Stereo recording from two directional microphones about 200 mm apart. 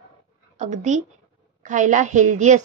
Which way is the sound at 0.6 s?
35° right (ahead or behind).